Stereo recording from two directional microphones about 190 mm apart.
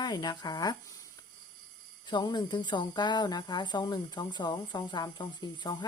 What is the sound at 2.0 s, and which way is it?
Speech, 25° left (ahead or behind).